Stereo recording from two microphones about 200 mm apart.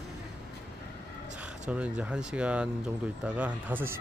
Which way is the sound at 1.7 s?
5° right (ahead or behind).